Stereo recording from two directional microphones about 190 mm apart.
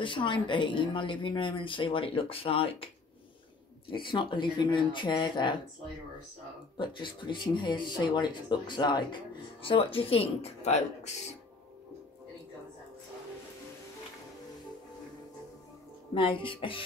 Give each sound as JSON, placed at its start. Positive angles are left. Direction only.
{"t": 0.0, "sound": "speech", "side_deg": 25}
{"t": 3.9, "sound": "speech", "side_deg": 25}
{"t": 6.8, "sound": "speech", "side_deg": 25}
{"t": 16.2, "sound": "speech", "side_deg": 25}